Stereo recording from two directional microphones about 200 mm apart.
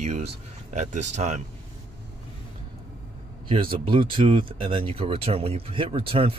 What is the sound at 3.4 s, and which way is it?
Speech, 25° right (ahead or behind).